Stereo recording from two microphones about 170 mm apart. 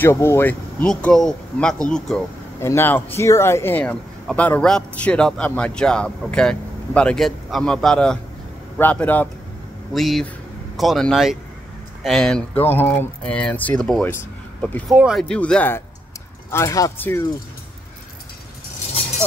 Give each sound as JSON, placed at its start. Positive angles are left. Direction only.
{"t": 0.0, "sound": "a man's voice", "side_deg": 15}
{"t": 14.1, "sound": "a sound", "side_deg": 10}
{"t": 14.9, "sound": "a man's voice", "side_deg": 0}